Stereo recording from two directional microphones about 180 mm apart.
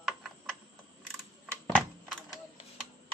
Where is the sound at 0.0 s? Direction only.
Centre (ahead or behind).